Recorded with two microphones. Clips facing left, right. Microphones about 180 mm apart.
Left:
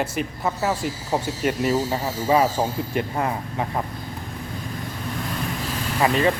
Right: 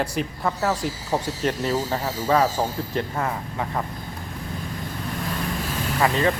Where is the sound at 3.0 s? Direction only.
20° left (ahead or behind).